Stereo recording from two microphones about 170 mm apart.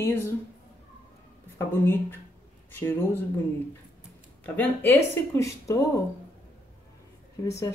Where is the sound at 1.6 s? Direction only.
15° left (ahead or behind).